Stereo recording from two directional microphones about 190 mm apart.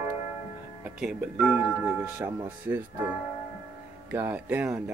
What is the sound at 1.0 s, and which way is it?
Speech, 5° right (ahead or behind).